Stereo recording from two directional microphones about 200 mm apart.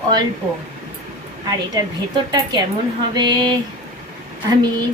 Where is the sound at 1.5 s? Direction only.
20° right (ahead or behind).